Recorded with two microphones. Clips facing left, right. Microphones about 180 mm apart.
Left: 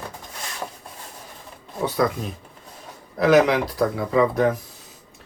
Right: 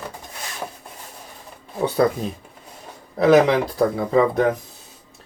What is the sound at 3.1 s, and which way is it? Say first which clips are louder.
Speech: right 2 dB; 25° right (ahead or behind).